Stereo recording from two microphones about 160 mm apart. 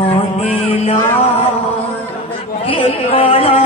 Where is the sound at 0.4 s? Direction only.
40° left (ahead or behind).